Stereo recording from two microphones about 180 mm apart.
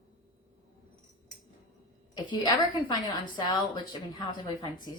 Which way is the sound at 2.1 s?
25° left (ahead or behind).